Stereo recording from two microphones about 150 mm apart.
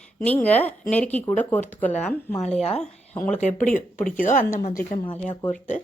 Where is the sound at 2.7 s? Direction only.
10° left (ahead or behind).